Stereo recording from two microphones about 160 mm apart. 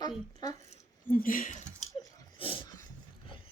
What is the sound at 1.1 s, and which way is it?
Speech, 60° left (ahead or behind).